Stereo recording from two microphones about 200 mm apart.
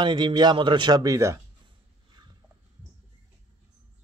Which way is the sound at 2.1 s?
20° right (ahead or behind).